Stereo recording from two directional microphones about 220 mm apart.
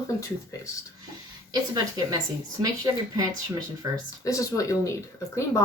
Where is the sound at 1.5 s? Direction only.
20° right (ahead or behind).